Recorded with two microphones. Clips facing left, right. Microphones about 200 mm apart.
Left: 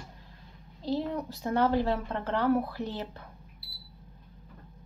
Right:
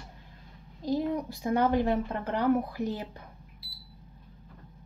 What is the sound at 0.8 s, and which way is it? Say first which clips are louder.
A woman's voice: right 2 dB; 15° right (ahead or behind).